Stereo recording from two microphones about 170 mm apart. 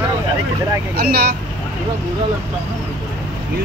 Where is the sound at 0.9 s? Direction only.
65° right (ahead or behind).